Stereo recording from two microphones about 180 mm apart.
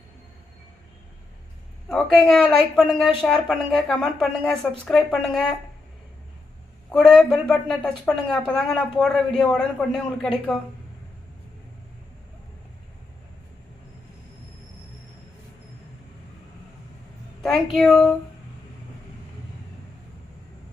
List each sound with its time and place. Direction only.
1.9 s speech: centre (ahead or behind)
6.9 s speech: centre (ahead or behind)
17.4 s speech: centre (ahead or behind)